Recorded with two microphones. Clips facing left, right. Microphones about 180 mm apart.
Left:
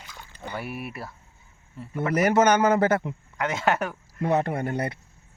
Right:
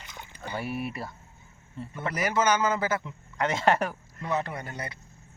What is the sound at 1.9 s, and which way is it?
A man's voice, 60° left (ahead or behind).